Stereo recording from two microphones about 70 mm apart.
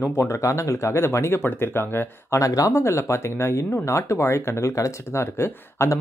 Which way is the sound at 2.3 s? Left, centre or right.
Left.